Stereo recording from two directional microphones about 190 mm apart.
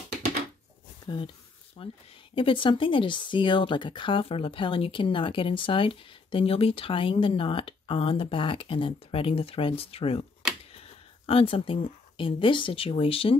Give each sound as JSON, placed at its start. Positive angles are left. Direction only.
{"t": 1.0, "sound": "speech", "side_deg": 25}
{"t": 11.2, "sound": "speech", "side_deg": 30}